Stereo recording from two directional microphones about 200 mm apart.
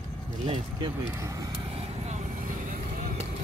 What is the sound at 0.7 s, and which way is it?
Vehicle, 20° right (ahead or behind).